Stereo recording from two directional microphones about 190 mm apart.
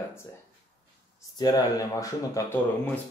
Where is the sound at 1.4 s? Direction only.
20° left (ahead or behind).